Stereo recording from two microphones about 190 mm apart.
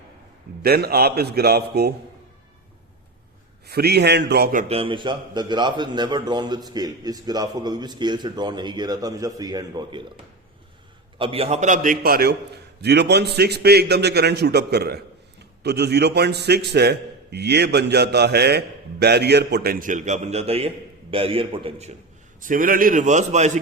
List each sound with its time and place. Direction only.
0.6 s a man's voice: 55° right (ahead or behind)
3.7 s a man's voice: 55° right (ahead or behind)
4.7 s a man's voice: 30° right (ahead or behind)
11.2 s a man's voice: 30° right (ahead or behind)
22.4 s a man's voice: 45° right (ahead or behind)